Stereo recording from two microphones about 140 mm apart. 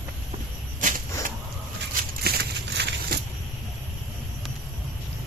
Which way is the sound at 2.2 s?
90° right.